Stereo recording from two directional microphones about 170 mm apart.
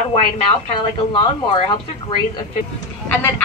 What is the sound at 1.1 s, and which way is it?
Speech, 30° left (ahead or behind).